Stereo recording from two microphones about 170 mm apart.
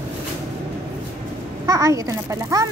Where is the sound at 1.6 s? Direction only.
20° right (ahead or behind).